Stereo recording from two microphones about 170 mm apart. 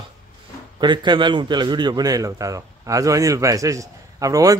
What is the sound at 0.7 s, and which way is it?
A man's voice, 25° right (ahead or behind).